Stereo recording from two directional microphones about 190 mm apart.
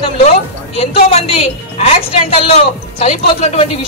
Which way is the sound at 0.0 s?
30° left (ahead or behind).